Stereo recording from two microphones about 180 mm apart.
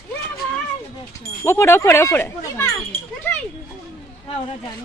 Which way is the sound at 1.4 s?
15° left (ahead or behind).